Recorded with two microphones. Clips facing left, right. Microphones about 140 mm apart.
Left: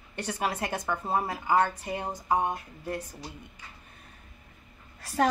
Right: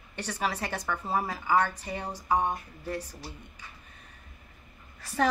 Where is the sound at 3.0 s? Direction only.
20° left (ahead or behind).